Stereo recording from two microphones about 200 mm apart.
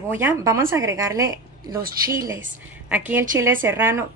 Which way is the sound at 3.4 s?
10° right (ahead or behind).